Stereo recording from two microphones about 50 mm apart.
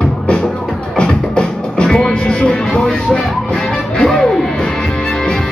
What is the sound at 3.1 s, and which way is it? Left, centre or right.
Music, centre.